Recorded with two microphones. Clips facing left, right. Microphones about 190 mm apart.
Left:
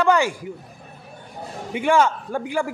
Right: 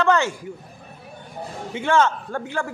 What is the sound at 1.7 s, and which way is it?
A man's voice, 15° left (ahead or behind).